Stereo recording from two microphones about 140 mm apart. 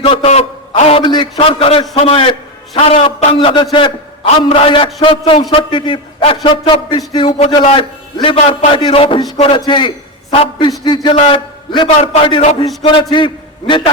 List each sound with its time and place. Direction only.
0.0 s a sound: 40° left (ahead or behind)
2.0 s a man's voice: 40° left (ahead or behind)
3.3 s a man's voice: 35° left (ahead or behind)